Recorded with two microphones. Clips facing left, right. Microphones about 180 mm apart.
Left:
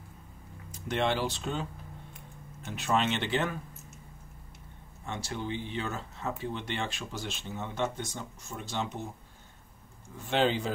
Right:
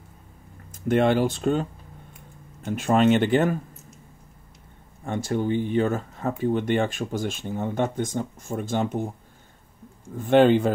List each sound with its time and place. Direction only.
0.7 s speech: 50° right (ahead or behind)
5.0 s speech: 50° right (ahead or behind)
10.1 s speech: 50° right (ahead or behind)